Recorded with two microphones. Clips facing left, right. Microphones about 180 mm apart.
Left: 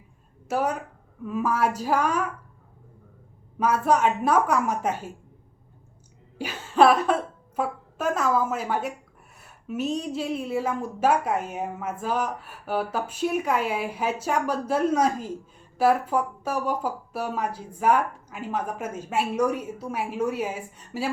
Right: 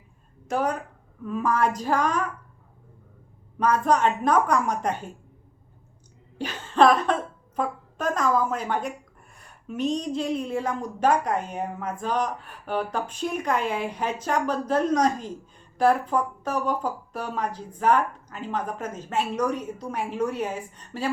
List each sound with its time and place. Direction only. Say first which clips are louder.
0.4 s a woman's voice: even; 5° left (ahead or behind)
3.6 s a woman's voice: even; 10° left (ahead or behind)
6.4 s a woman's voice: even; 10° left (ahead or behind)